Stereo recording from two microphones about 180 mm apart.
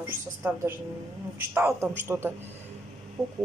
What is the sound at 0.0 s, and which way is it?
Speech, 10° right (ahead or behind).